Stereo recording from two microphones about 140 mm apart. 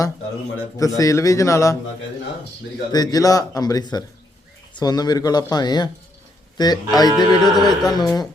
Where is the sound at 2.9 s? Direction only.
25° left (ahead or behind).